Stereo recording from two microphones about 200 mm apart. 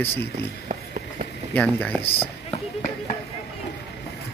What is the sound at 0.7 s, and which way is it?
Run, 40° right (ahead or behind).